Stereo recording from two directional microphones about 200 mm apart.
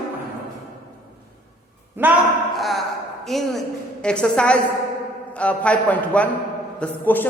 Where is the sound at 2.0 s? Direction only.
10° right (ahead or behind).